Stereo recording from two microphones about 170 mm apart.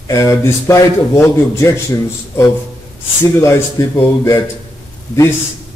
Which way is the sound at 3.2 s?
15° left (ahead or behind).